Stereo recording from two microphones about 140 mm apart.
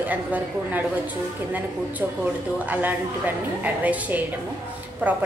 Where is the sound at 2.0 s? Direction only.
15° right (ahead or behind).